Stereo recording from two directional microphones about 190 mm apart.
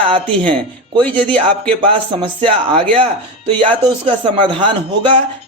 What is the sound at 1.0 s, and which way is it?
Speech, 5° left (ahead or behind).